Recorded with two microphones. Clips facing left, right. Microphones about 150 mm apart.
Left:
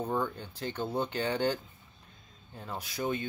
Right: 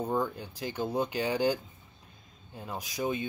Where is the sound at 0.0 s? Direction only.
10° right (ahead or behind).